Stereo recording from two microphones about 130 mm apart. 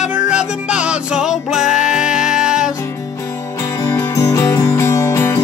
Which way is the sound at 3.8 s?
25° left (ahead or behind).